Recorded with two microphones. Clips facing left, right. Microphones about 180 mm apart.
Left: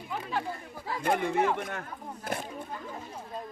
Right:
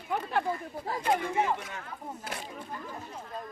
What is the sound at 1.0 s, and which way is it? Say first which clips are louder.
Speech: left 2 dB; 55° left (ahead or behind).